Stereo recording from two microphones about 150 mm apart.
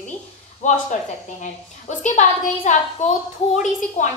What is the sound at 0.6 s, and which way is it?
Speech, 55° left (ahead or behind).